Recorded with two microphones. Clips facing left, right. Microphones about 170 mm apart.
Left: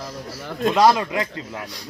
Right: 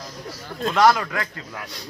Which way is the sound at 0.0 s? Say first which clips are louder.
Left 3 dB; 30° left (ahead or behind).